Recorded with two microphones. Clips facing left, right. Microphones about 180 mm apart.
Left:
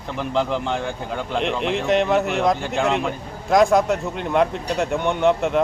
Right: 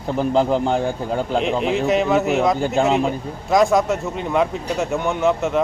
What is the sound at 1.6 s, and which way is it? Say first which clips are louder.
Speech: left 1 dB; centre (ahead or behind).